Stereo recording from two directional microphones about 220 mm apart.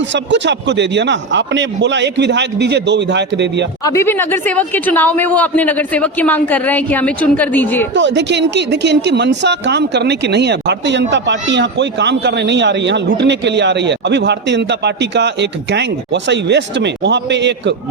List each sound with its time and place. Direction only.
0.1 s speech: 55° right (ahead or behind)
3.8 s speech: 10° left (ahead or behind)
7.9 s speech: 55° right (ahead or behind)